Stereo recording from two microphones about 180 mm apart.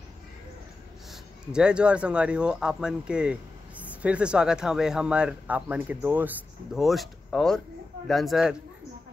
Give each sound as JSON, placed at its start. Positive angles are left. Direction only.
{"t": 1.1, "sound": "speech", "side_deg": -5}